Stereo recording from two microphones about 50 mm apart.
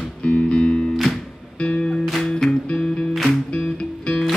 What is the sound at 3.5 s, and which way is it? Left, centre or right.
Music, centre.